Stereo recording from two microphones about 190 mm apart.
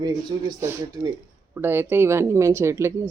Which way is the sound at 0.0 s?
15° right (ahead or behind).